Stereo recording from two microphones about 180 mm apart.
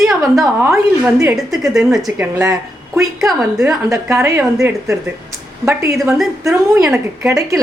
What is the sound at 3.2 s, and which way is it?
Speech, centre (ahead or behind).